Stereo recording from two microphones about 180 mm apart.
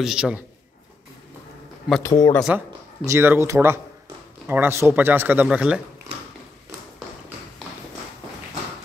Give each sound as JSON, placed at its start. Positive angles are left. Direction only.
{"t": 0.0, "sound": "a man's voice", "side_deg": -5}
{"t": 2.0, "sound": "speech", "side_deg": 20}
{"t": 2.4, "sound": "speech", "side_deg": -5}
{"t": 3.1, "sound": "speech", "side_deg": -15}